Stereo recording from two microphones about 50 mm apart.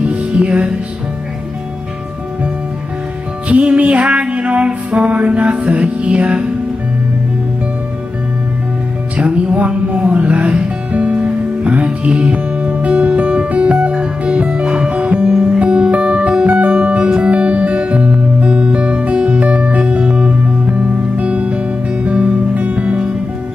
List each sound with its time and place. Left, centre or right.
0.0 s music: right
3.4 s music: right
9.1 s music: right
15.3 s music: centre